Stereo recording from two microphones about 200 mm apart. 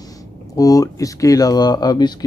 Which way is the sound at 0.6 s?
15° left (ahead or behind).